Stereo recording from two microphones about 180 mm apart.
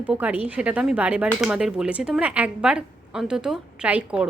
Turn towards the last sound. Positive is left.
turn(degrees=-5)  # may be behind; listen again after turning